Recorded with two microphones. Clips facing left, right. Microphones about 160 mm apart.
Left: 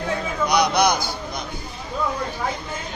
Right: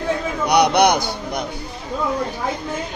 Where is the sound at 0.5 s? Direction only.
65° right (ahead or behind).